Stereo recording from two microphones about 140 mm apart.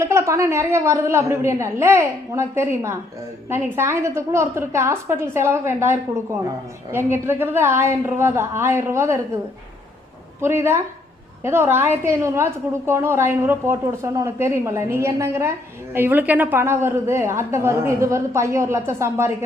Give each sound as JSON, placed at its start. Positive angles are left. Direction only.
{"t": 0.0, "sound": "a woman's voice", "side_deg": -20}
{"t": 10.4, "sound": "a woman's voice", "side_deg": -20}